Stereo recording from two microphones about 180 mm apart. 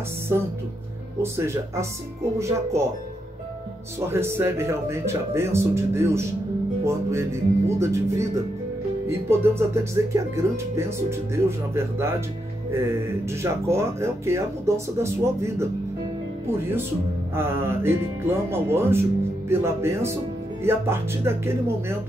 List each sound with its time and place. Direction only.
1.2 s speech: 15° right (ahead or behind)
4.0 s speech: 15° right (ahead or behind)
13.4 s speech: 15° right (ahead or behind)
17.4 s speech: 15° right (ahead or behind)